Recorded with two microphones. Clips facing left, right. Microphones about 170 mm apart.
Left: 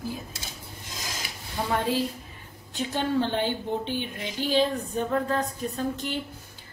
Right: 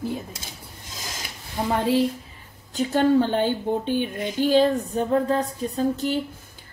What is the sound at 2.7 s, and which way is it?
Speech, 45° right (ahead or behind).